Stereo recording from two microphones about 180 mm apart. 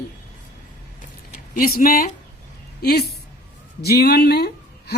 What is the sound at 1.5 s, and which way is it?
A man's voice, 55° left (ahead or behind).